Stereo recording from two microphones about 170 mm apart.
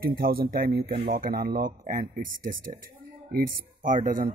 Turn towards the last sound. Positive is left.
turn(degrees=-55)  # may be behind; listen again after turning